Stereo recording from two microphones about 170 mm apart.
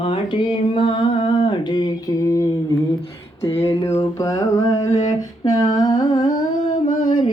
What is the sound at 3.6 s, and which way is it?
Mantra, 15° left (ahead or behind).